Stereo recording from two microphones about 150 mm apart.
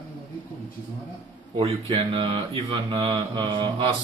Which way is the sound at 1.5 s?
35° right (ahead or behind).